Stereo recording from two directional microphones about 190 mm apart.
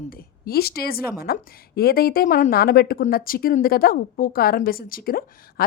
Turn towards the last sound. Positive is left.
turn(degrees=50)  # may be behind; listen again after turning